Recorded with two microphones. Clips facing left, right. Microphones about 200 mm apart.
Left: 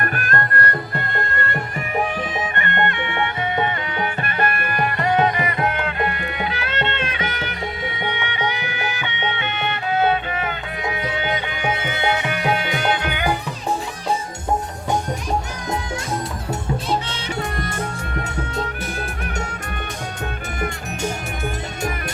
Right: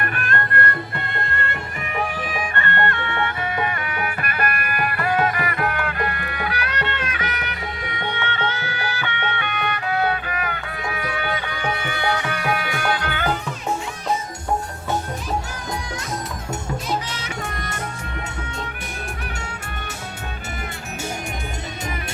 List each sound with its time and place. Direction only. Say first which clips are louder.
0.0 s music: left 2 dB; 40° left (ahead or behind)
2.3 s music: left 1 dB; 20° left (ahead or behind)
8.0 s music: even; 15° left (ahead or behind)
16.5 s music: left 3 dB; 30° left (ahead or behind)